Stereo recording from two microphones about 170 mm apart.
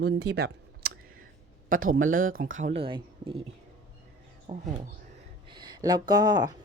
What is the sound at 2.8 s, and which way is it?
Speech, 35° right (ahead or behind).